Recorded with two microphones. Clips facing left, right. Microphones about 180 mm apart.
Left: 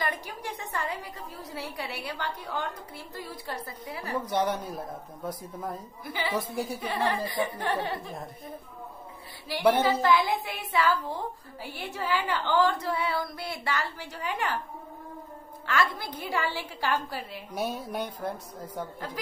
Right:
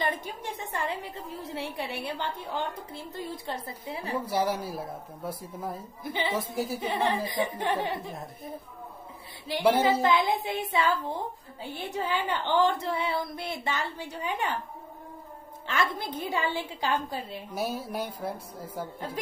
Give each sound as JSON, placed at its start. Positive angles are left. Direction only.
{"t": 0.0, "sound": "a woman's voice", "side_deg": -25}
{"t": 4.3, "sound": "speech", "side_deg": -5}
{"t": 6.0, "sound": "a woman's voice", "side_deg": -25}
{"t": 9.7, "sound": "speech", "side_deg": -10}
{"t": 10.0, "sound": "a woman's voice", "side_deg": -20}
{"t": 15.6, "sound": "a woman's voice", "side_deg": -20}
{"t": 17.6, "sound": "a woman's voice", "side_deg": 0}